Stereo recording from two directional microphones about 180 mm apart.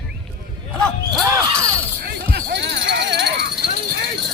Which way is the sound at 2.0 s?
65° right (ahead or behind).